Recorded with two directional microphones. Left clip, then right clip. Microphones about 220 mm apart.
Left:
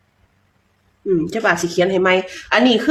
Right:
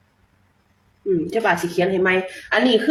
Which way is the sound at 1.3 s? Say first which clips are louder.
Left 2 dB; 40° left (ahead or behind).